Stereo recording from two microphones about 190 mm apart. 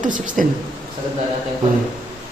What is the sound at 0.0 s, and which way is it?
Speech, 45° right (ahead or behind).